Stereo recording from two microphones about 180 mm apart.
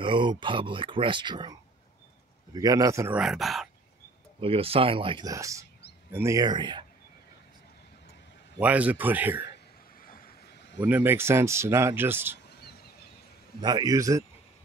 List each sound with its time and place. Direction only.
0.0 s speech: 25° right (ahead or behind)
2.5 s speech: 20° right (ahead or behind)
3.2 s speech: centre (ahead or behind)
4.4 s speech: 30° right (ahead or behind)
8.5 s a man's voice: 10° right (ahead or behind)
10.0 s vehicle: 55° left (ahead or behind)
10.8 s a man's voice: 10° right (ahead or behind)
12.4 s a sound: 65° left (ahead or behind)
13.6 s speech: 25° right (ahead or behind)